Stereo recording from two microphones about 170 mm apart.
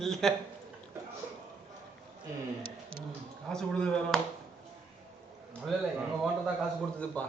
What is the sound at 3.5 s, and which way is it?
Speech, 5° left (ahead or behind).